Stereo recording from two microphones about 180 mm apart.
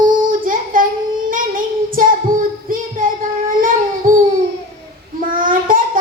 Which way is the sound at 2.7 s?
50° right (ahead or behind).